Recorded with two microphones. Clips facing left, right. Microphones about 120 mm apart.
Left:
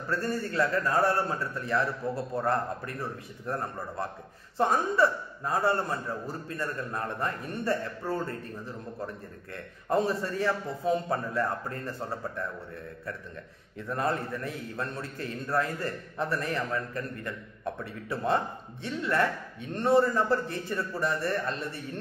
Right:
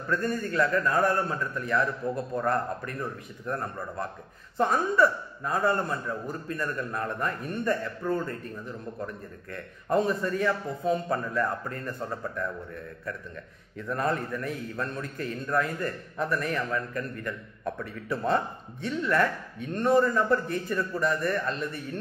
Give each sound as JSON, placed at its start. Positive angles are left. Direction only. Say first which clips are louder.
{"t": 0.1, "sound": "a man's voice", "louder": "right 2 dB", "side_deg": 30}
{"t": 13.7, "sound": "a man's voice", "louder": "right 1 dB", "side_deg": 25}